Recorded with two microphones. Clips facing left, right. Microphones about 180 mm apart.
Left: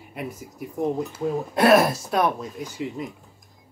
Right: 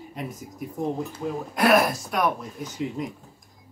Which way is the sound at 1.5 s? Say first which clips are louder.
Left 3 dB; 25° left (ahead or behind).